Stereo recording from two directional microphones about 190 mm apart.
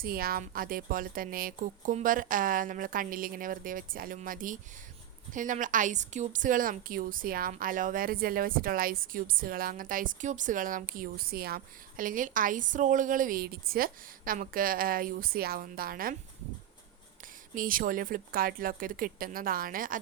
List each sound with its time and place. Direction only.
0.0 s a woman's voice: 50° right (ahead or behind)
17.5 s a woman's voice: 45° right (ahead or behind)